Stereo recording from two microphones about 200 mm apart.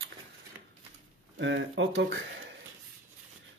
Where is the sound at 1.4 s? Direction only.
65° right (ahead or behind).